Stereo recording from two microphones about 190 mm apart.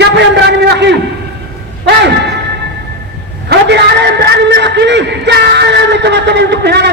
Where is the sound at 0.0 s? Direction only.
65° right (ahead or behind).